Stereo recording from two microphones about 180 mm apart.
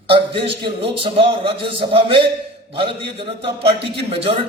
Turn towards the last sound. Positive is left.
turn(degrees=-30)  # may be behind; listen again after turning